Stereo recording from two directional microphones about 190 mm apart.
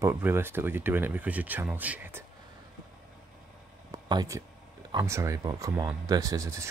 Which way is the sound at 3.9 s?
20° right (ahead or behind).